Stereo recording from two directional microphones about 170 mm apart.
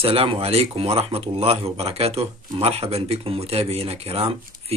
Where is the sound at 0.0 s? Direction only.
35° right (ahead or behind).